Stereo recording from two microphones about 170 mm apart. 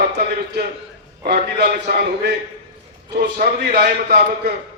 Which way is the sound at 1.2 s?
65° right (ahead or behind).